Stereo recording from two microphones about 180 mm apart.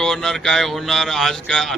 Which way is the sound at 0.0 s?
Centre (ahead or behind).